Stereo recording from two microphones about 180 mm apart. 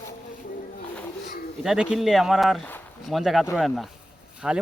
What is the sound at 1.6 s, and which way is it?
Speech, 5° right (ahead or behind).